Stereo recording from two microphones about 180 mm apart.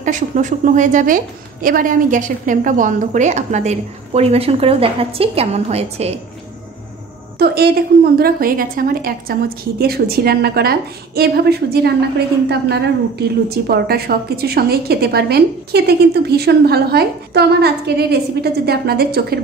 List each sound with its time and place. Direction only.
0.0 s a woman's voice: 45° right (ahead or behind)
7.3 s a woman's voice: 60° right (ahead or behind)
13.5 s a woman's voice: 60° right (ahead or behind)